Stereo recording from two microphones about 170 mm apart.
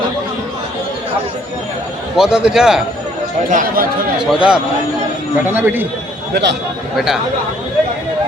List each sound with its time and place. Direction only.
2.1 s a man's voice: 5° right (ahead or behind)
3.5 s speech: 50° right (ahead or behind)
4.2 s a man's voice: 5° right (ahead or behind)
6.3 s speech: 90° right